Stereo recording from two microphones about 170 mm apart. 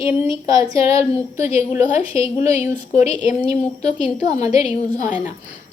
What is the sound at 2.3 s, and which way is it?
Speech, 40° left (ahead or behind).